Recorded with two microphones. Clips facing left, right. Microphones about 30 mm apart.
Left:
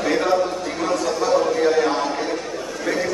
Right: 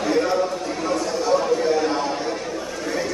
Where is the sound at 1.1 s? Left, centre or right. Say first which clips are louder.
Left 1 dB; centre.